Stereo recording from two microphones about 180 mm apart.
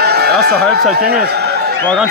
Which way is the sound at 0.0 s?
65° right (ahead or behind).